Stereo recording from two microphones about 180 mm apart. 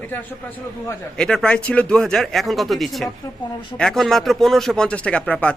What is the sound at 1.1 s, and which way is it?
Speech, 5° left (ahead or behind).